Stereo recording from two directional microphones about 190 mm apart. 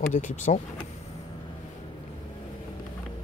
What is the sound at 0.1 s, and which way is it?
Speech, 40° left (ahead or behind).